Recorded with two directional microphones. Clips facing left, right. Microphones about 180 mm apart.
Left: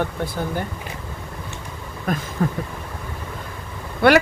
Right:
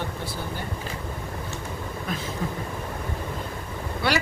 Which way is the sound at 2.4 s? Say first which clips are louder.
Left 9 dB; 60° left (ahead or behind).